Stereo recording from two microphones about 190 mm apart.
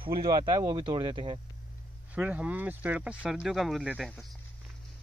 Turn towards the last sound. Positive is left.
turn(degrees=0)  # may be behind; listen again after turning